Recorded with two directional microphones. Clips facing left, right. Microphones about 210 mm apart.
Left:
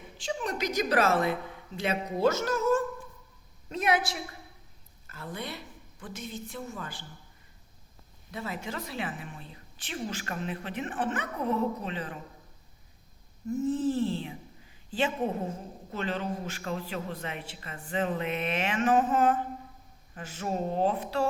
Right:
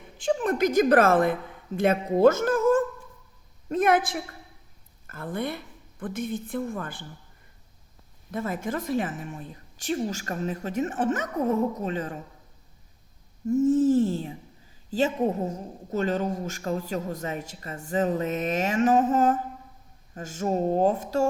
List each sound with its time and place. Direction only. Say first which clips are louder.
0.2 s a woman's voice: right 9 dB; 50° right (ahead or behind)
8.3 s a woman's voice: right 7 dB; 50° right (ahead or behind)
13.7 s a woman's voice: right 7 dB; 45° right (ahead or behind)